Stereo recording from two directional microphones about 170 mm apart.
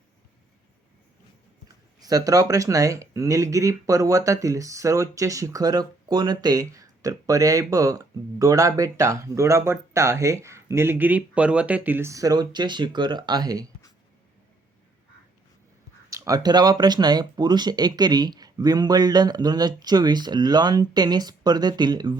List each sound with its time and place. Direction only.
1.6 s speech: 20° right (ahead or behind)
16.0 s speech: 20° right (ahead or behind)